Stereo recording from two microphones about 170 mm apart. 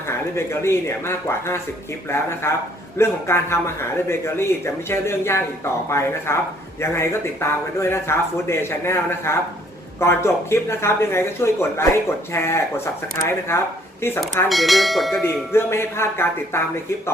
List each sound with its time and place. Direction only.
0.1 s speech: 15° left (ahead or behind)
14.5 s speech: centre (ahead or behind)
15.5 s speech: 15° left (ahead or behind)